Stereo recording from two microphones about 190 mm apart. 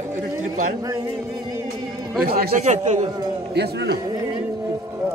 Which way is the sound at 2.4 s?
40° right (ahead or behind).